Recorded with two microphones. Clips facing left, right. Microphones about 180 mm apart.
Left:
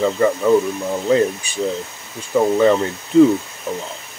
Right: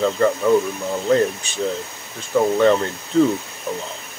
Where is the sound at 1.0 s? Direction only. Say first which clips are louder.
Left 1 dB; 10° left (ahead or behind).